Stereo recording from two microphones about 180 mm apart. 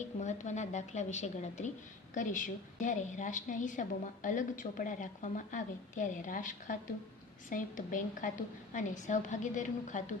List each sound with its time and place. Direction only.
0.2 s a woman's voice: 40° left (ahead or behind)